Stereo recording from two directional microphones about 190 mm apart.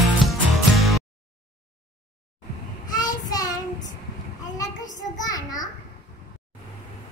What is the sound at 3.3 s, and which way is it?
Child singing, 20° left (ahead or behind).